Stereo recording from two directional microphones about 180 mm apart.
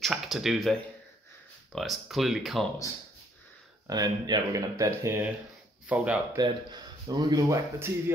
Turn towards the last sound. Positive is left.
turn(degrees=-20)  # may be behind; listen again after turning